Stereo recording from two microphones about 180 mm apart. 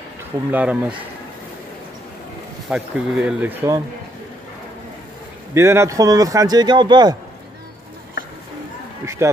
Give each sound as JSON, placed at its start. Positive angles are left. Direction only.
{"t": 0.5, "sound": "speech", "side_deg": -10}
{"t": 2.7, "sound": "speech", "side_deg": -5}
{"t": 5.5, "sound": "speech", "side_deg": -15}
{"t": 9.0, "sound": "speech", "side_deg": -15}